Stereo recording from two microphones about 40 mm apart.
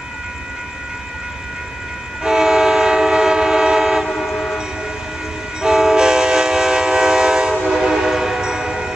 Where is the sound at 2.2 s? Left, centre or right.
Centre.